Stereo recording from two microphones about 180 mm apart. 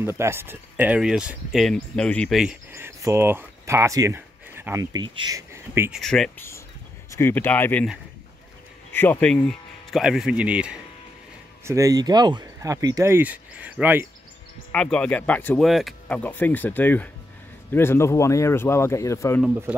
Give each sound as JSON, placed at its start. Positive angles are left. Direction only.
{"t": 0.0, "sound": "speech", "side_deg": -15}
{"t": 2.7, "sound": "speech", "side_deg": -15}
{"t": 5.0, "sound": "speech", "side_deg": -25}
{"t": 5.9, "sound": "speech", "side_deg": 0}
{"t": 7.1, "sound": "speech", "side_deg": 15}
{"t": 8.9, "sound": "speech", "side_deg": 10}
{"t": 11.6, "sound": "speech", "side_deg": -15}
{"t": 14.7, "sound": "speech", "side_deg": 5}
{"t": 19.4, "sound": "speech", "side_deg": -10}